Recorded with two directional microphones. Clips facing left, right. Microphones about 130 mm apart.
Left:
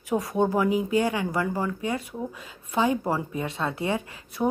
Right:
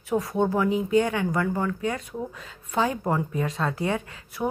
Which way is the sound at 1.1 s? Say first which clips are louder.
Right 2 dB; 10° left (ahead or behind).